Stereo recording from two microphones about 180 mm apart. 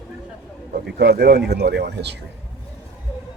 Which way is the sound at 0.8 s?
60° right (ahead or behind).